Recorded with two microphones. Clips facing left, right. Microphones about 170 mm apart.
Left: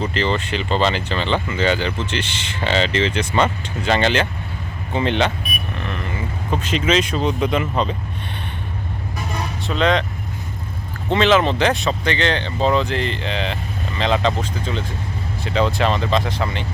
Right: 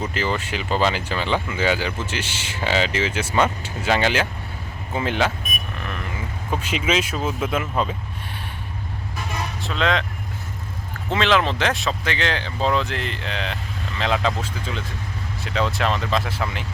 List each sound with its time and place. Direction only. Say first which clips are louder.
0.0 s speech: left 3 dB; 10° right (ahead or behind)
5.4 s a sound: left 3 dB; 45° right (ahead or behind)
5.8 s speech: left 4 dB; 5° right (ahead or behind)
9.6 s speech: left 4 dB; centre (ahead or behind)
11.1 s speech: left 4 dB; centre (ahead or behind)